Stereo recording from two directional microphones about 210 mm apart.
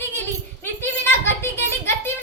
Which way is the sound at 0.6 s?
10° left (ahead or behind).